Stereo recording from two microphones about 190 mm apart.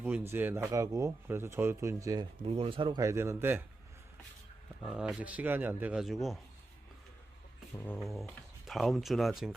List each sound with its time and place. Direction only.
0.0 s speech: 10° right (ahead or behind)
2.4 s speech: 30° right (ahead or behind)
3.0 s speech: 15° right (ahead or behind)
4.9 s speech: 5° right (ahead or behind)
7.8 s speech: 5° left (ahead or behind)